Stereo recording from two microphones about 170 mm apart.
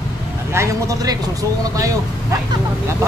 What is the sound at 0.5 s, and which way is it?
Speech, 20° right (ahead or behind).